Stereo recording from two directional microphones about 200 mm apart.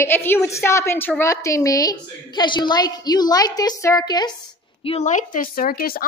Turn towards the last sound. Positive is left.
turn(degrees=50)  # may be behind; listen again after turning